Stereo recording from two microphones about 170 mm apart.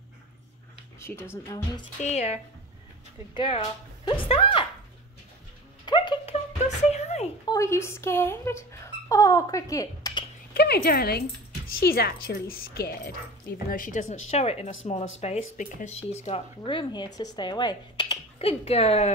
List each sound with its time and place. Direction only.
1.1 s speech: 5° left (ahead or behind)
2.0 s a woman's voice: 40° left (ahead or behind)
5.9 s a sound: 30° left (ahead or behind)
6.6 s a sound: 40° left (ahead or behind)
7.4 s speech: 20° left (ahead or behind)
10.5 s a woman's voice: 70° left (ahead or behind)
13.7 s a woman's voice: 50° left (ahead or behind); by 18.2 s 25° left (ahead or behind)
18.4 s a woman's voice: 35° left (ahead or behind)